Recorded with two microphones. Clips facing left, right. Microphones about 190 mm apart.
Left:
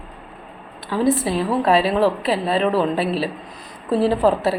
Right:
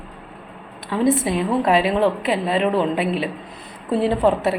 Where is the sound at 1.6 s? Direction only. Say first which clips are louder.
Left 1 dB; 30° left (ahead or behind).